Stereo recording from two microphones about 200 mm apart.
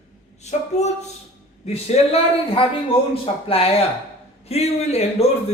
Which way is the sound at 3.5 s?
30° left (ahead or behind).